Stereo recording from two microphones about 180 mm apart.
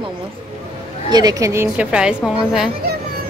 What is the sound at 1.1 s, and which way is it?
Speech, 20° right (ahead or behind).